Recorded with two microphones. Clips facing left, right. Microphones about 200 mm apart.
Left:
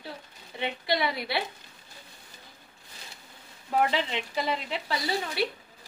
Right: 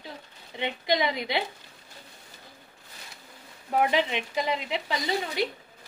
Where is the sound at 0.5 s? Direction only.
20° right (ahead or behind).